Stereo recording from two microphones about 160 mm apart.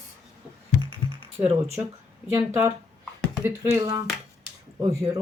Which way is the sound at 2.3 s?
15° right (ahead or behind).